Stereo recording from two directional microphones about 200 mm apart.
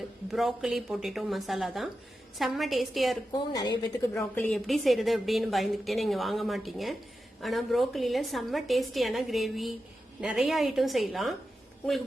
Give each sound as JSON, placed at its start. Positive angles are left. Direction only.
{"t": 0.3, "sound": "a woman's voice", "side_deg": 0}
{"t": 3.5, "sound": "a woman's voice", "side_deg": 20}
{"t": 4.2, "sound": "a woman's voice", "side_deg": 5}